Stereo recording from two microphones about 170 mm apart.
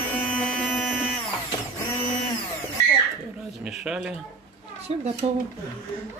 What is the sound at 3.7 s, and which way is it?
Speech, 5° right (ahead or behind).